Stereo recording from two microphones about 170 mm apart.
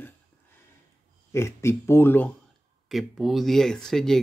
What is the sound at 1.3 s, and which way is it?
Speech, 15° left (ahead or behind).